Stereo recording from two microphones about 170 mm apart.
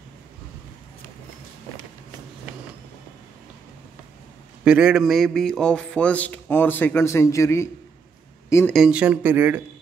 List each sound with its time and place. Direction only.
4.6 s a man's voice: 5° right (ahead or behind); by 8.7 s 15° left (ahead or behind)
8.7 s speech: 5° right (ahead or behind)